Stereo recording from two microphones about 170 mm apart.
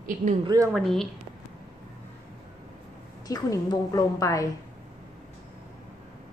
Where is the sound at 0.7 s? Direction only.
Centre (ahead or behind).